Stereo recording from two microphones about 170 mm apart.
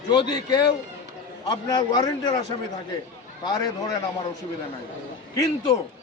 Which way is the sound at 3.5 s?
25° left (ahead or behind).